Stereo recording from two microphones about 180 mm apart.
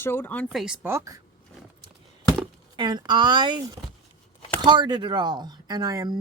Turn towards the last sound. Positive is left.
turn(degrees=-20)  # may be behind; listen again after turning